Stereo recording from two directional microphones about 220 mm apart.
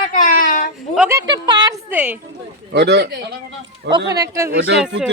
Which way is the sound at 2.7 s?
50° right (ahead or behind).